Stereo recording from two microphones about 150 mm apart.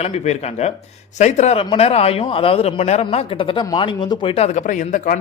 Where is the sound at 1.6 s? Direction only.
40° left (ahead or behind).